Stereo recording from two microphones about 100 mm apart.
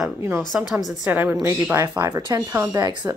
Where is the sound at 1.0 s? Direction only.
15° right (ahead or behind).